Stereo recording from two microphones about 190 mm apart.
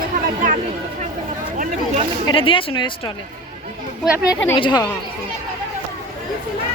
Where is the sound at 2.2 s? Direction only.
25° left (ahead or behind).